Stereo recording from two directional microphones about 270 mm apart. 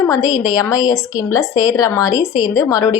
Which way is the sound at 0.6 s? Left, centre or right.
Centre.